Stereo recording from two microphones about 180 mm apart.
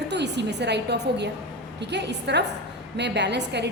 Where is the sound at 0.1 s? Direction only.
70° right (ahead or behind).